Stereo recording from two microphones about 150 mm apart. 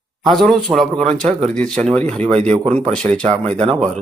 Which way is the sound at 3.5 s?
45° right (ahead or behind).